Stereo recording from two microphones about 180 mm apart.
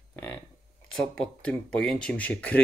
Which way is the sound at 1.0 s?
5° left (ahead or behind).